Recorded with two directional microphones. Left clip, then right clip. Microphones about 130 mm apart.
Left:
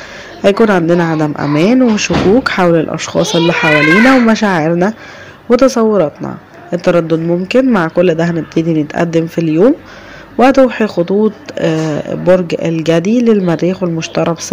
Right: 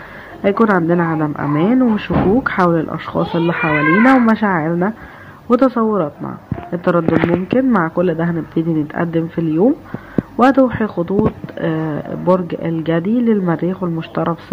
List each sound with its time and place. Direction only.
0.4 s a woman's voice: 40° left (ahead or behind)
5.6 s speech: 35° left (ahead or behind)